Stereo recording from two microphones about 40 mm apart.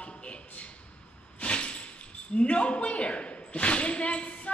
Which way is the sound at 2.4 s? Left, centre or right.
Left.